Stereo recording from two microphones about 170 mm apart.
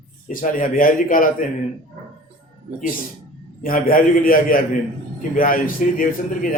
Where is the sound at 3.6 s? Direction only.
55° left (ahead or behind).